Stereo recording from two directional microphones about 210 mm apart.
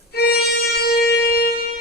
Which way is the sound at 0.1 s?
50° left (ahead or behind).